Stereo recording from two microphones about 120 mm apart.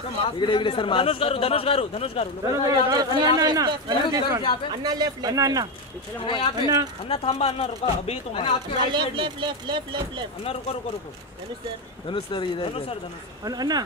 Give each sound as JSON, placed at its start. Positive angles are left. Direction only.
{"t": 0.2, "sound": "a man's voice", "side_deg": 45}
{"t": 2.9, "sound": "speech", "side_deg": -35}
{"t": 6.2, "sound": "a man's voice", "side_deg": 40}
{"t": 6.5, "sound": "speech", "side_deg": -35}
{"t": 7.1, "sound": "a man's voice", "side_deg": 55}
{"t": 8.9, "sound": "speech", "side_deg": -40}
{"t": 10.4, "sound": "speech", "side_deg": 55}
{"t": 12.1, "sound": "a man's voice", "side_deg": 45}
{"t": 13.4, "sound": "speech", "side_deg": -30}